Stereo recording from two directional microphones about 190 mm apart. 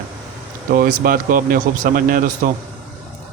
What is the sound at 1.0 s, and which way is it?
Speech, 50° right (ahead or behind).